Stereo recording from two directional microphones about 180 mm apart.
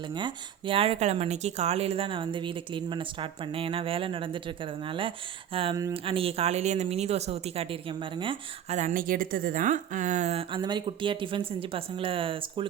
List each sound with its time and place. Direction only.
0.1 s speech: 25° right (ahead or behind)
8.8 s speech: 50° right (ahead or behind); by 12.6 s 30° right (ahead or behind)